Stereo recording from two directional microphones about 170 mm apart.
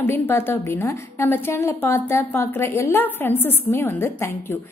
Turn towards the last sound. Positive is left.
turn(degrees=15)  # may be behind; listen again after turning